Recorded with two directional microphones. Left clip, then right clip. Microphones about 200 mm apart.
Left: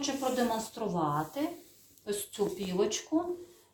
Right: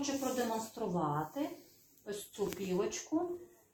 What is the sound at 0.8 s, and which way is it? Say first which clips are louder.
Speech: left 3 dB; 30° right (ahead or behind).